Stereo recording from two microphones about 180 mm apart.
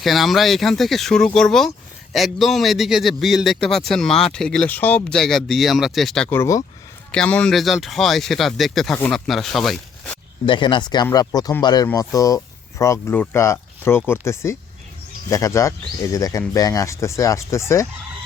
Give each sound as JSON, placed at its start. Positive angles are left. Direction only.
{"t": 0.0, "sound": "a man's voice", "side_deg": 0}
{"t": 10.4, "sound": "speech", "side_deg": 25}